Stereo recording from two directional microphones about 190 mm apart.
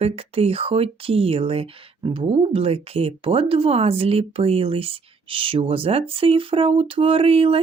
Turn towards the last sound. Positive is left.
turn(degrees=-30)  # may be behind; listen again after turning